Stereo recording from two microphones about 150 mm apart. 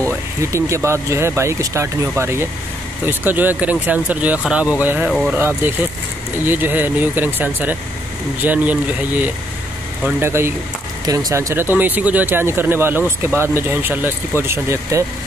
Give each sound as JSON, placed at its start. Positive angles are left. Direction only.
{"t": 0.1, "sound": "speech", "side_deg": -20}
{"t": 5.4, "sound": "speech", "side_deg": -15}